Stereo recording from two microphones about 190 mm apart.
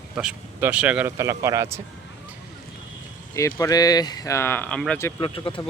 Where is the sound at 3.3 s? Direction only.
15° left (ahead or behind).